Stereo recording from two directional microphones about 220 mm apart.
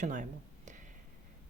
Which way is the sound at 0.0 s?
35° right (ahead or behind).